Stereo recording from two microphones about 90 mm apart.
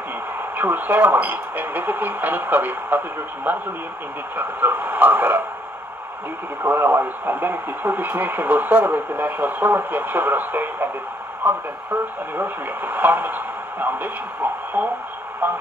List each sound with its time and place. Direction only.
0.6 s speech: 20° right (ahead or behind)
6.6 s speech: 25° right (ahead or behind)